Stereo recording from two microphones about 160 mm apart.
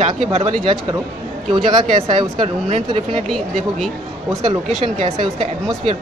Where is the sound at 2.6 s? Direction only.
45° right (ahead or behind).